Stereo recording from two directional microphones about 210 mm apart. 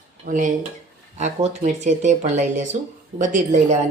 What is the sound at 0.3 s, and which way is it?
Speech, 40° right (ahead or behind).